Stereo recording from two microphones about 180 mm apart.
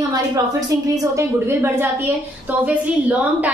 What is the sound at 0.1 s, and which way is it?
A woman's voice, 20° right (ahead or behind).